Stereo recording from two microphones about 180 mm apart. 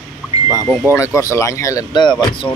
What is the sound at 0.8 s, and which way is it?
Speech, 10° right (ahead or behind).